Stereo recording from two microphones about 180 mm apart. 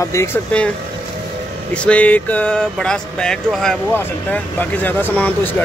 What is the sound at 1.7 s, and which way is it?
Speech, 5° left (ahead or behind).